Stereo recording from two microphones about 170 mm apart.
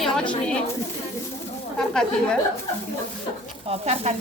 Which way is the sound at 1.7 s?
5° left (ahead or behind).